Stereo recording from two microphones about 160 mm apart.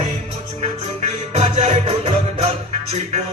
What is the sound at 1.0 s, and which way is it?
Music, 45° right (ahead or behind).